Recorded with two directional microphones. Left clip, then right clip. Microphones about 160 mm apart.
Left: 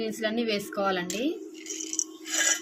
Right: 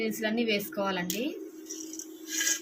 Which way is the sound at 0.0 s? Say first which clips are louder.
Left 1 dB; 35° left (ahead or behind).